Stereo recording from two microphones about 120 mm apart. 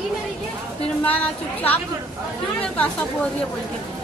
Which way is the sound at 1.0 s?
15° left (ahead or behind).